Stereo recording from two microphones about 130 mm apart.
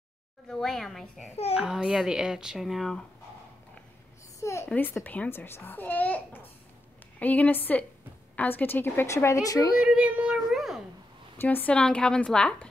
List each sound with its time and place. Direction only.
0.5 s a child's voice: 5° left (ahead or behind)
4.4 s a sound: 20° left (ahead or behind)
4.6 s a child's voice: 15° left (ahead or behind)
9.8 s speech: 10° right (ahead or behind)
11.3 s a child's voice: 15° left (ahead or behind)